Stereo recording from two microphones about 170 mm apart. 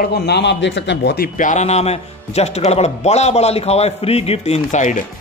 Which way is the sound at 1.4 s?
45° left (ahead or behind).